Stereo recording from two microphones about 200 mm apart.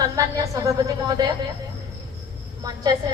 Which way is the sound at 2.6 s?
20° right (ahead or behind).